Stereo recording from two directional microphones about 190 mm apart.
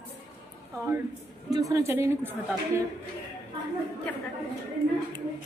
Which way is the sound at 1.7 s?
15° right (ahead or behind).